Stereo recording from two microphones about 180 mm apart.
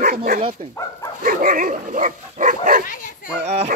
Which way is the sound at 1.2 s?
50° right (ahead or behind).